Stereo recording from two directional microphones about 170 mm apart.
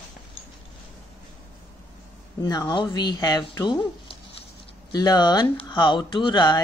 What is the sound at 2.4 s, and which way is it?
Speech, 20° left (ahead or behind).